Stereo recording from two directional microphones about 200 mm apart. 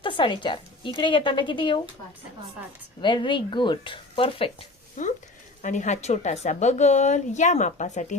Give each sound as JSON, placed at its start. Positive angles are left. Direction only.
{"t": 0.0, "sound": "a woman's voice", "side_deg": 25}
{"t": 3.0, "sound": "a woman's voice", "side_deg": 25}
{"t": 5.6, "sound": "a woman's voice", "side_deg": 35}